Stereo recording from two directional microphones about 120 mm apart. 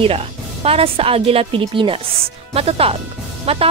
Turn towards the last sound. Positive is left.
turn(degrees=-55)  # may be behind; listen again after turning